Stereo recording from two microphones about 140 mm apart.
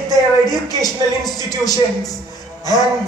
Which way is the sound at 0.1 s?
25° left (ahead or behind).